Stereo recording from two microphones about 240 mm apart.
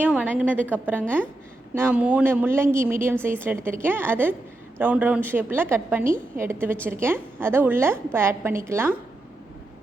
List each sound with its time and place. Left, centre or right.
0.0 s a woman's voice: centre
6.1 s a woman's voice: right
6.4 s a woman's voice: centre